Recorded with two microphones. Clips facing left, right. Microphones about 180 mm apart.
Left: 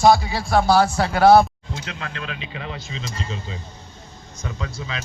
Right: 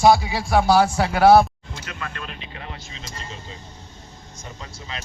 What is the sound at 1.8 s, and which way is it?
Speech, 90° left.